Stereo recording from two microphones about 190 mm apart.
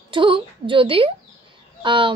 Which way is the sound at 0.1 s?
25° right (ahead or behind).